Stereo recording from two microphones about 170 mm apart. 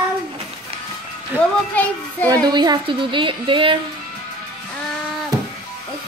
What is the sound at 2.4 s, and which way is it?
Speech, 25° right (ahead or behind).